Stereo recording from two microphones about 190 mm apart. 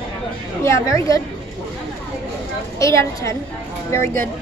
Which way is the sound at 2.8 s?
15° left (ahead or behind).